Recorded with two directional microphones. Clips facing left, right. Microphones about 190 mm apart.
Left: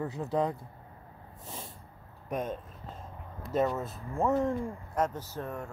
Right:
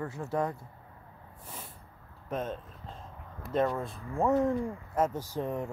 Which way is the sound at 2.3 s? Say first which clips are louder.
Left 1 dB; 15° left (ahead or behind).